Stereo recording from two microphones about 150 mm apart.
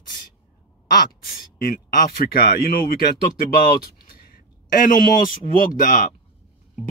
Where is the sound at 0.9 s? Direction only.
80° left.